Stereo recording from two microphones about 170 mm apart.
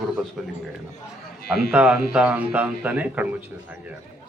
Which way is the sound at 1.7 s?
10° right (ahead or behind).